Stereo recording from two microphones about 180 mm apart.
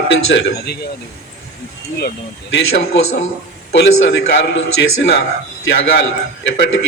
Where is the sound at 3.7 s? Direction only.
75° left (ahead or behind).